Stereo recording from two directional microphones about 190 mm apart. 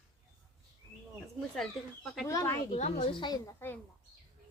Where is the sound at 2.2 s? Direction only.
15° left (ahead or behind).